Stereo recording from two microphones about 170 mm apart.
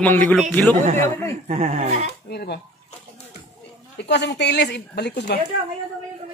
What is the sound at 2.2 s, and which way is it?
Speech, 70° left (ahead or behind).